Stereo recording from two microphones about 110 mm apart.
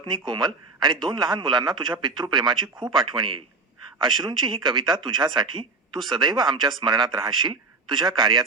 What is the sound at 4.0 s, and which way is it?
Speech, 45° right (ahead or behind).